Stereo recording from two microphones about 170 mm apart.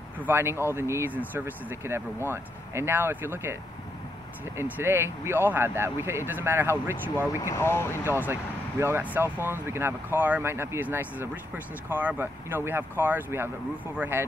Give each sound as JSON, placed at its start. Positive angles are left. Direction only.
{"t": 0.2, "sound": "speech", "side_deg": -15}
{"t": 4.6, "sound": "speech", "side_deg": -10}
{"t": 7.3, "sound": "speech", "side_deg": 15}
{"t": 8.0, "sound": "speech", "side_deg": -15}